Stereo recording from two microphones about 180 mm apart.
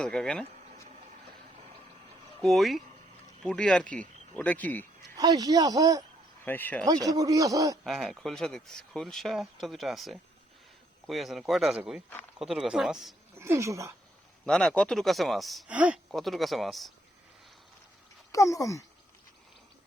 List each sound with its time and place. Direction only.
0.0 s speech: 5° left (ahead or behind)
1.5 s vehicle: 40° right (ahead or behind)
2.4 s speech: centre (ahead or behind)
5.1 s a man's voice: 20° right (ahead or behind)
6.4 s speech: 10° left (ahead or behind)
6.8 s a man's voice: 20° right (ahead or behind)
7.9 s speech: centre (ahead or behind)
13.4 s speech: 15° right (ahead or behind)
14.4 s speech: 5° left (ahead or behind)
18.3 s speech: 20° left (ahead or behind)